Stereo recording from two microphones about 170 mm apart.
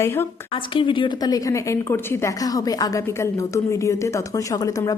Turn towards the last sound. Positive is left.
turn(degrees=20)  # may be behind; listen again after turning